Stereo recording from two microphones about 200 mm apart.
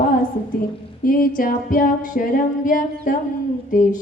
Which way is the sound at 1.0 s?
45° left (ahead or behind).